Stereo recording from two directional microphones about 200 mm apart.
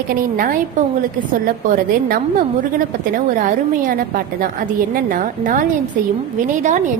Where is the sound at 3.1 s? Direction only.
45° right (ahead or behind).